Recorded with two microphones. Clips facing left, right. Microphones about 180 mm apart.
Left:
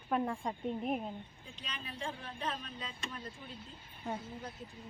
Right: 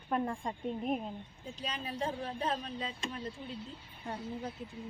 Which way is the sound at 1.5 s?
35° right (ahead or behind).